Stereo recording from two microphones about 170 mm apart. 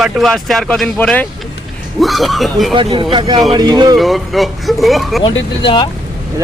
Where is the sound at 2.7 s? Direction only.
30° right (ahead or behind).